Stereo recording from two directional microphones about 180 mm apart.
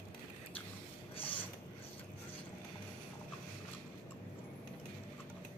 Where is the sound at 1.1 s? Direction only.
30° left (ahead or behind).